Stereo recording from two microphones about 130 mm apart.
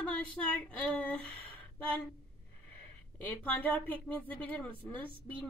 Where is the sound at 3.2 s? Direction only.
15° left (ahead or behind).